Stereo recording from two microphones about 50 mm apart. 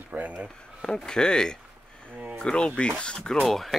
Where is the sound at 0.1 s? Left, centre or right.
Right.